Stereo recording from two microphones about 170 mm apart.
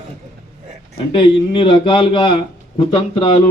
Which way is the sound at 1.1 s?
30° left (ahead or behind).